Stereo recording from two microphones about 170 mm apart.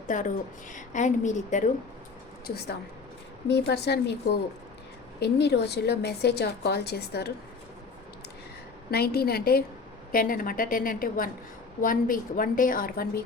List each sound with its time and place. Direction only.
0.1 s a woman's voice: 50° left (ahead or behind)
3.4 s a woman's voice: 75° left (ahead or behind)
8.9 s a woman's voice: 65° left (ahead or behind)